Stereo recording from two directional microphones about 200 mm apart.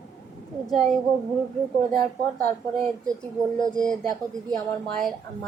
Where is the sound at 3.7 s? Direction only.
5° left (ahead or behind).